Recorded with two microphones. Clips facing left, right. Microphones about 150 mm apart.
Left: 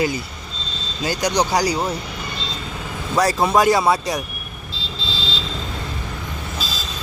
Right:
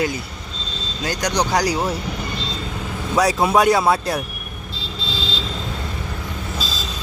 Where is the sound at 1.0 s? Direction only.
5° left (ahead or behind).